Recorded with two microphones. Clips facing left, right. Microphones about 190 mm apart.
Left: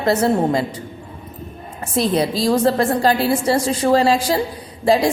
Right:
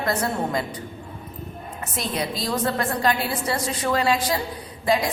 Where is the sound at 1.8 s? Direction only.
30° left (ahead or behind).